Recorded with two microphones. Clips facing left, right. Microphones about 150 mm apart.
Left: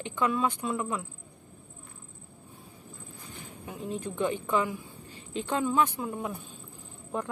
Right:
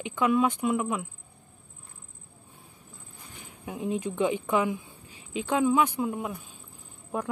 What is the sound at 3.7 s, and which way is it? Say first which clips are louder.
Speech: right 5 dB; 15° right (ahead or behind).